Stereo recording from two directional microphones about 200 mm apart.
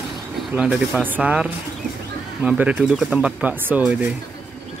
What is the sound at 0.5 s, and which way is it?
Speech, 5° right (ahead or behind).